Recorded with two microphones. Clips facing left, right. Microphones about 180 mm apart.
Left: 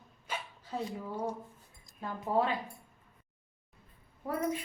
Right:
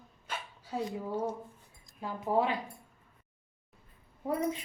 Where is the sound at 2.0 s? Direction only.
15° right (ahead or behind).